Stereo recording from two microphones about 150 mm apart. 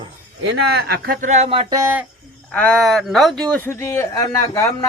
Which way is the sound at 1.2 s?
50° right (ahead or behind).